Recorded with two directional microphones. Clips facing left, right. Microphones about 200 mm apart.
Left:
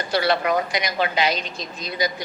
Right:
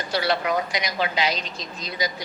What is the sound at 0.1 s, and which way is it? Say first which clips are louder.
A man's voice: left 3 dB; 55° left (ahead or behind).